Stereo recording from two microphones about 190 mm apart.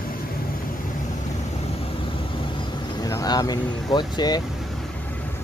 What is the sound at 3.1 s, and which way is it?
Speech, 20° left (ahead or behind).